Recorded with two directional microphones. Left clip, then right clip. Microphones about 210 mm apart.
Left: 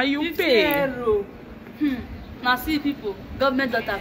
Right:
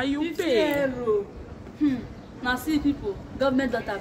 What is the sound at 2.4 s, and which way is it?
A man's voice, 15° right (ahead or behind).